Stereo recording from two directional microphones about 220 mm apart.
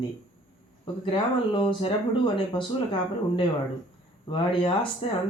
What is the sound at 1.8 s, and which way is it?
Speech, 25° left (ahead or behind).